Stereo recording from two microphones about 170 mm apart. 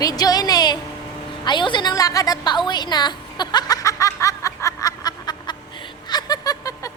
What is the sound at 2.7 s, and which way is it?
Snicker, 25° left (ahead or behind).